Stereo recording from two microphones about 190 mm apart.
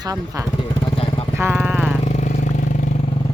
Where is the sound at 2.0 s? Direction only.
40° left (ahead or behind).